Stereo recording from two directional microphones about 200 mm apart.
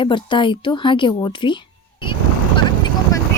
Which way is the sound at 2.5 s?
20° left (ahead or behind).